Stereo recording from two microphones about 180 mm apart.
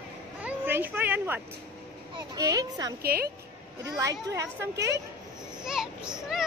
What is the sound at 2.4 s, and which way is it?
Speech, 20° right (ahead or behind).